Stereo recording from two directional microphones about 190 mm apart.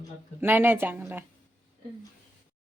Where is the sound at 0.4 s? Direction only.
10° right (ahead or behind).